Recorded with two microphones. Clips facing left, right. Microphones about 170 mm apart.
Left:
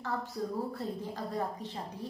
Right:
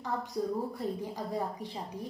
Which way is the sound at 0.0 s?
15° right (ahead or behind).